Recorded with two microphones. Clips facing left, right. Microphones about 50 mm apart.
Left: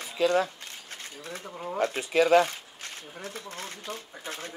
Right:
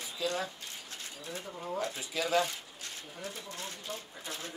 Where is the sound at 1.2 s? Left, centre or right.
Left.